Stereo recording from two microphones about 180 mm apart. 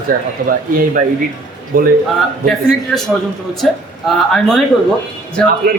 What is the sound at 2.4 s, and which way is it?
Speech, centre (ahead or behind).